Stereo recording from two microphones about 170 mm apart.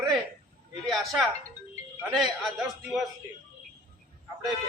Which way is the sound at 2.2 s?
Centre (ahead or behind).